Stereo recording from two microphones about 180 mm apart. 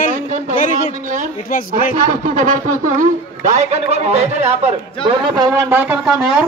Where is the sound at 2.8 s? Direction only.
45° right (ahead or behind).